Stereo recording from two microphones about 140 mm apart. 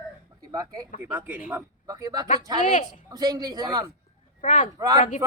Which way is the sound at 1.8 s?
25° right (ahead or behind).